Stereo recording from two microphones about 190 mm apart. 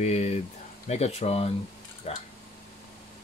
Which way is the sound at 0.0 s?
35° left (ahead or behind).